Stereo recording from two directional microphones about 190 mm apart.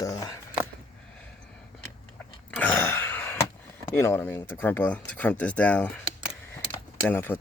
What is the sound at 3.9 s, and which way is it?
Speech, 10° left (ahead or behind).